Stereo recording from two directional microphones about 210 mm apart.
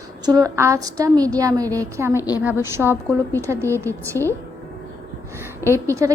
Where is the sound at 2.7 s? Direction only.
10° right (ahead or behind).